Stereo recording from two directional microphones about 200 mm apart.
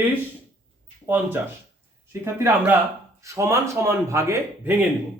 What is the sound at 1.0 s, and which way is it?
Speech, 10° right (ahead or behind).